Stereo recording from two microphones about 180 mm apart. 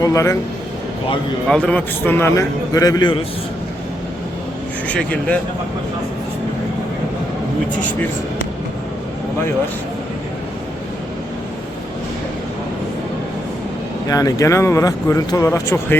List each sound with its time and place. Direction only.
0.0 s speech: 15° left (ahead or behind)
1.5 s speech: 5° left (ahead or behind); by 3.2 s 25° left (ahead or behind)
4.9 s speech: 5° left (ahead or behind)
14.1 s speech: 20° left (ahead or behind)